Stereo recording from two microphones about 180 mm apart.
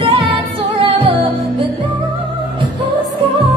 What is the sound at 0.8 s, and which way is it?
Music, 30° right (ahead or behind).